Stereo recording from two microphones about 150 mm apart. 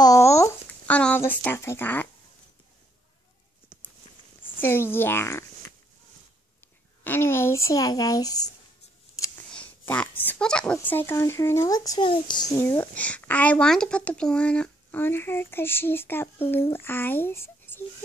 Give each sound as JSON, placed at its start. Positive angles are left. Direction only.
{"t": 0.0, "sound": "a sound", "side_deg": 20}
{"t": 4.6, "sound": "speech", "side_deg": 15}
{"t": 7.1, "sound": "speech", "side_deg": 15}
{"t": 9.5, "sound": "a child's voice", "side_deg": 10}
{"t": 12.5, "sound": "speech", "side_deg": 15}